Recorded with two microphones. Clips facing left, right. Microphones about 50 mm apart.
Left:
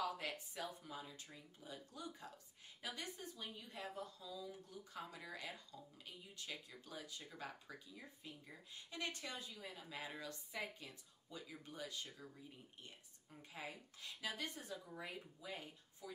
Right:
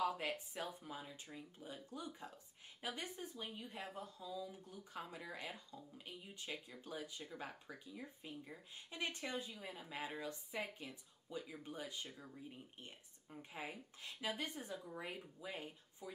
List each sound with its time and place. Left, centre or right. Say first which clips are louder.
0.0 s speech: right 4 dB; right